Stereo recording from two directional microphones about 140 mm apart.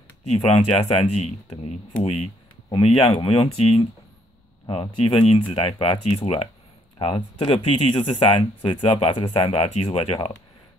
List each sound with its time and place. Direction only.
0.3 s speech: 50° left (ahead or behind)